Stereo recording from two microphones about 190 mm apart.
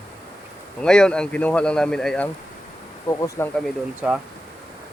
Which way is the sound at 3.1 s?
15° left (ahead or behind).